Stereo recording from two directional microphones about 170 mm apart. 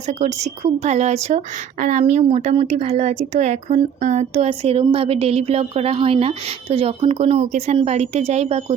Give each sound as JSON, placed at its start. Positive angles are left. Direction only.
{"t": 0.1, "sound": "speech", "side_deg": -40}